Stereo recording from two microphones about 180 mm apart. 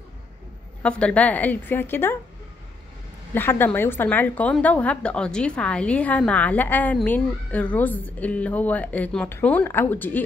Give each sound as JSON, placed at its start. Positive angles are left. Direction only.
{"t": 0.8, "sound": "a woman's voice", "side_deg": 5}
{"t": 3.3, "sound": "a woman's voice", "side_deg": 10}